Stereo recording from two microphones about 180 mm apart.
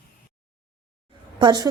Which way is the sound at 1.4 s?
25° right (ahead or behind).